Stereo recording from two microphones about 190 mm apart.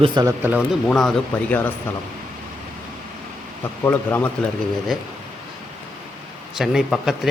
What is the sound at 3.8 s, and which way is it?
Speech, 10° left (ahead or behind).